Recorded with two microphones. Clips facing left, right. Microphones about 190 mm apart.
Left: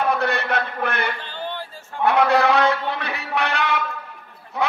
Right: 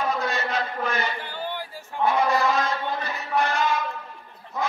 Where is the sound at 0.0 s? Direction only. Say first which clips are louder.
Left 4 dB; 60° left (ahead or behind).